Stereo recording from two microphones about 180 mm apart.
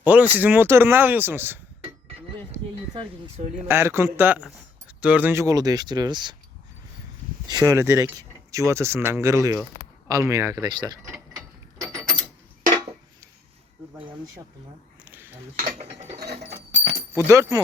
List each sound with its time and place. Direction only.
0.0 s speech: 10° right (ahead or behind)
2.5 s a sound: 25° right (ahead or behind)
3.7 s speech: 15° right (ahead or behind)
7.4 s speech: 20° right (ahead or behind)
15.5 s ratchet: 50° right (ahead or behind)
17.2 s speech: 15° right (ahead or behind)